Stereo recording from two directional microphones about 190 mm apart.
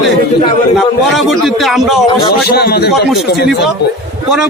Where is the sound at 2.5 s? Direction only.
55° left (ahead or behind).